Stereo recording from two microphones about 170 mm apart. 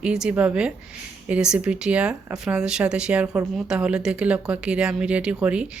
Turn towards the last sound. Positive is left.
turn(degrees=-5)  # may be behind; listen again after turning